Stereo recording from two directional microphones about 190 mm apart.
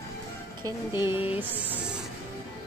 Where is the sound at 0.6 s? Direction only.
10° right (ahead or behind).